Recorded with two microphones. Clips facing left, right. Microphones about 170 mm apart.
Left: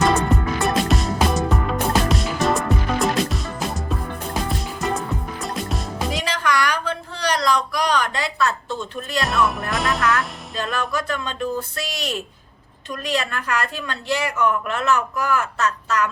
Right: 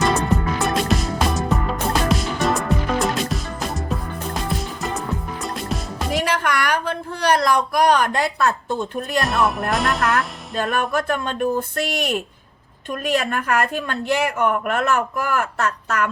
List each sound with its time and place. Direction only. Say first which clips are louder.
0.6 s music: even; centre (ahead or behind)
4.4 s music: left 1 dB; centre (ahead or behind)
6.1 s a sound: right 3 dB; 55° right (ahead or behind)
9.2 s speech: left 1 dB; centre (ahead or behind)
10.6 s a woman's voice: right 4 dB; 50° right (ahead or behind)